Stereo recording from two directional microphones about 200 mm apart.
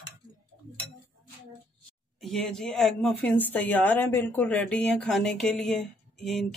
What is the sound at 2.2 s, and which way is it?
Speech, centre (ahead or behind).